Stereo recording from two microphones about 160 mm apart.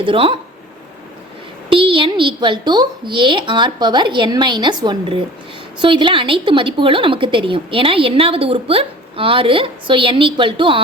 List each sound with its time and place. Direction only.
0.0 s a woman's voice: 30° right (ahead or behind)
1.7 s a woman's voice: 35° right (ahead or behind)